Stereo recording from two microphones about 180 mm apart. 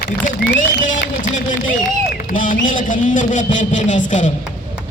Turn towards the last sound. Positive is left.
turn(degrees=45)  # may be behind; listen again after turning